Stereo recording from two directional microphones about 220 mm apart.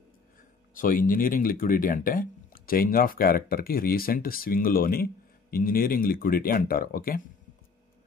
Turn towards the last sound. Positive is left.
turn(degrees=40)  # may be behind; listen again after turning